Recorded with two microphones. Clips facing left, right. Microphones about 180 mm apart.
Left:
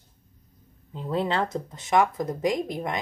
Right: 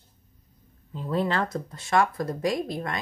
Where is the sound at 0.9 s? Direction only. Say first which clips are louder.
Even; 20° left (ahead or behind).